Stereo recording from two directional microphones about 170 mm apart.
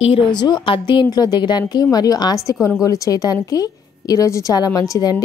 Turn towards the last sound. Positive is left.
turn(degrees=20)  # may be behind; listen again after turning